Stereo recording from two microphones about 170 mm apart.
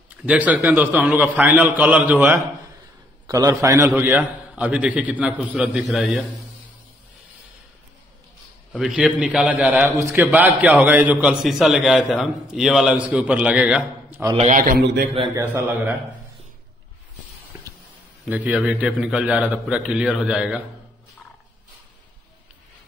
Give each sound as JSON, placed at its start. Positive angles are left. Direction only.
{"t": 0.3, "sound": "a man's voice", "side_deg": -10}
{"t": 8.7, "sound": "a man's voice", "side_deg": -5}
{"t": 14.3, "sound": "a man's voice", "side_deg": -45}
{"t": 15.3, "sound": "a man's voice", "side_deg": -20}
{"t": 17.5, "sound": "a sound", "side_deg": -20}
{"t": 18.2, "sound": "a man's voice", "side_deg": -10}